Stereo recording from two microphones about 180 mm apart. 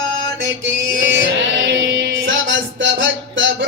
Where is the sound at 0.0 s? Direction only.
90° right.